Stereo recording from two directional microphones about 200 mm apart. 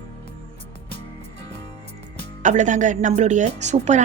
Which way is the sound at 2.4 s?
40° right (ahead or behind).